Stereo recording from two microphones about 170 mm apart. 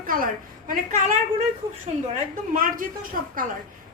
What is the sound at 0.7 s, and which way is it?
Speech, 45° right (ahead or behind).